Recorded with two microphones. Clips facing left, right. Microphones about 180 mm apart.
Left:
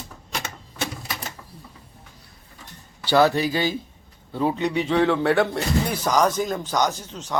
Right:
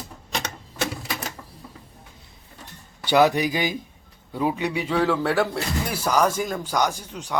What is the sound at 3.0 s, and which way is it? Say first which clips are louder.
Speech: even; 15° right (ahead or behind).